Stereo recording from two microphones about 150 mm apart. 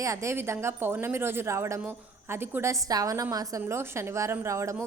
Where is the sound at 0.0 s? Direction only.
20° right (ahead or behind).